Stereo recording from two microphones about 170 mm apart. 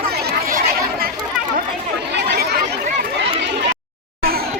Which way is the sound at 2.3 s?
65° right (ahead or behind).